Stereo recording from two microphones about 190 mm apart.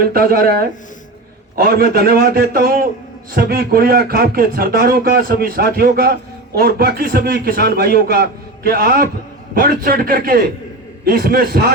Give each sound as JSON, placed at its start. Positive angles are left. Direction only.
{"t": 0.1, "sound": "speech", "side_deg": -50}
{"t": 1.5, "sound": "speech", "side_deg": -55}